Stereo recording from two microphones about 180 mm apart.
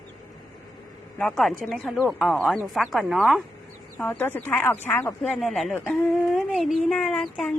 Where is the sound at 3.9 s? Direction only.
10° left (ahead or behind).